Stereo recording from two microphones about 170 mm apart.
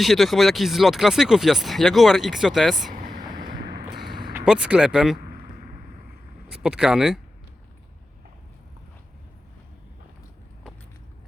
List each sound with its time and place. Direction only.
0.0 s speech: centre (ahead or behind)
3.1 s a sound: 25° right (ahead or behind)
3.4 s vehicle: 65° right (ahead or behind)
4.0 s a sound: 25° right (ahead or behind)
4.4 s speech: 5° right (ahead or behind)
6.5 s speech: 5° right (ahead or behind)